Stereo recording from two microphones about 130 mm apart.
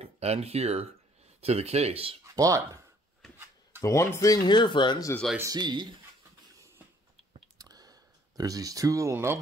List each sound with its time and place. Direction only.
0.0 s speech: 55° right (ahead or behind)
2.3 s speech: 25° right (ahead or behind)
3.2 s a sound: centre (ahead or behind)
3.8 s speech: 25° left (ahead or behind)
5.4 s speech: 30° right (ahead or behind)
7.5 s a sound: 30° right (ahead or behind)